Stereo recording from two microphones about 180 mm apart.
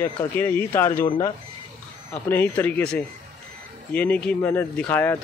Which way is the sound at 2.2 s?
10° left (ahead or behind).